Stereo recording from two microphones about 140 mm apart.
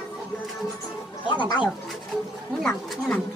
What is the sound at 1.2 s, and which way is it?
Speech, 35° left (ahead or behind).